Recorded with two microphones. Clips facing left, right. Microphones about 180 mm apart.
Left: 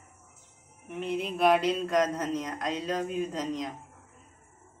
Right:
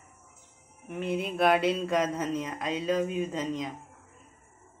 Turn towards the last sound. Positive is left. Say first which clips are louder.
# even
turn(degrees=-5)  # may be behind; listen again after turning